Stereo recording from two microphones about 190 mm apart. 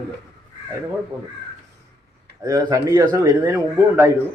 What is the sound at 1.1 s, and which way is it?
Speech, 15° right (ahead or behind).